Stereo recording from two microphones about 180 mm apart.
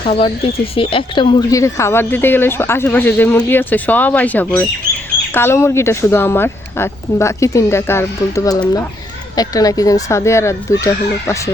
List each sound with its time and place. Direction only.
0.0 s speech: 30° left (ahead or behind); by 11.3 s 15° left (ahead or behind)